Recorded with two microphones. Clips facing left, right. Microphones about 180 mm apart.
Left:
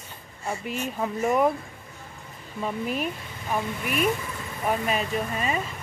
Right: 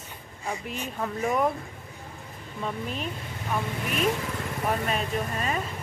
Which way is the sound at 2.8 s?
10° left (ahead or behind).